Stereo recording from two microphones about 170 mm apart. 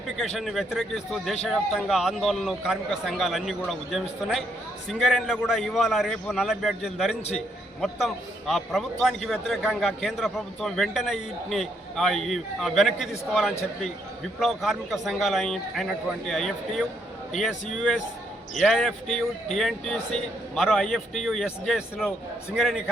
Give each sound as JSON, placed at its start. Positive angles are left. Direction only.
{"t": 0.3, "sound": "a man's voice", "side_deg": 0}